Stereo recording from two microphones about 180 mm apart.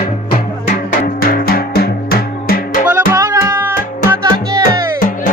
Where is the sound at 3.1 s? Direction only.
15° right (ahead or behind).